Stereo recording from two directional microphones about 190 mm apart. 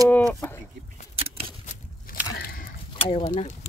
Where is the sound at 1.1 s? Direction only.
30° right (ahead or behind).